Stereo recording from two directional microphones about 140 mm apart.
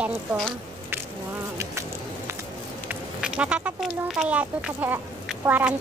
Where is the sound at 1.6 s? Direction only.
20° right (ahead or behind).